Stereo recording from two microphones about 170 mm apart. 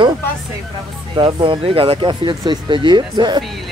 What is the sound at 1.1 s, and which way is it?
Speech, 30° right (ahead or behind).